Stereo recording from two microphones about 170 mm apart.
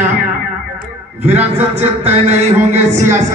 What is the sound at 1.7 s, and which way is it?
A man's voice, 35° right (ahead or behind).